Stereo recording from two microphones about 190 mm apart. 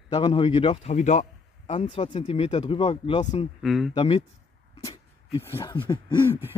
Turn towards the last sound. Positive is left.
turn(degrees=25)  # may be behind; listen again after turning